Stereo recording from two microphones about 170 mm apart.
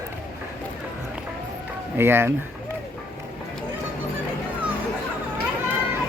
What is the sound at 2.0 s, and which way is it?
Speech, 15° right (ahead or behind).